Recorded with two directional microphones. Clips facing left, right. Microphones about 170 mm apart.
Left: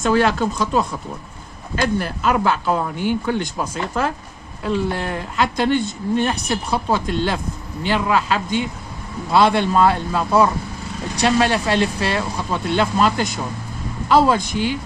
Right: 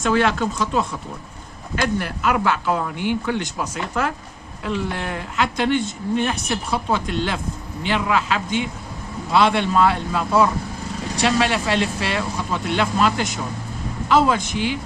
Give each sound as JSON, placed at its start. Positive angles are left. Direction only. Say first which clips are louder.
{"t": 0.0, "sound": "speech", "louder": "left 2 dB", "side_deg": 40}